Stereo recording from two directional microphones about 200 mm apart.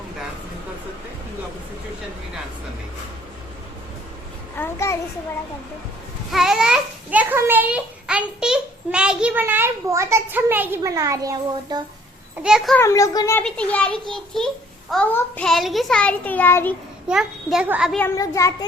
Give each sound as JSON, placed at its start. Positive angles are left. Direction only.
{"t": 4.5, "sound": "a child's voice", "side_deg": 10}
{"t": 6.3, "sound": "a child's voice", "side_deg": 0}
{"t": 12.4, "sound": "a child's voice", "side_deg": -5}
{"t": 12.8, "sound": "a child's voice", "side_deg": 15}
{"t": 17.1, "sound": "a child's voice", "side_deg": -5}
{"t": 18.0, "sound": "a child's voice", "side_deg": 15}